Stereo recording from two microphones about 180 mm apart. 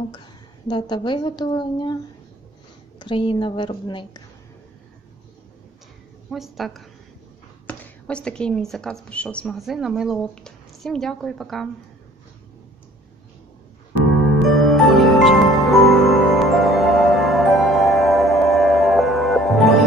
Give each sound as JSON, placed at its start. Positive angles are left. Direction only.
{"t": 0.7, "sound": "a woman's voice", "side_deg": 25}
{"t": 3.0, "sound": "a woman's voice", "side_deg": 30}
{"t": 6.3, "sound": "a woman's voice", "side_deg": 0}
{"t": 14.6, "sound": "music", "side_deg": 0}